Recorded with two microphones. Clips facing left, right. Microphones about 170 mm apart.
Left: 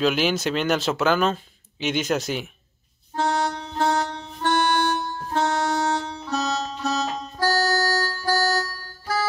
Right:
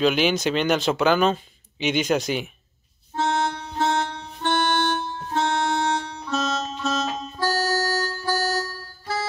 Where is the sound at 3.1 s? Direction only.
40° left (ahead or behind).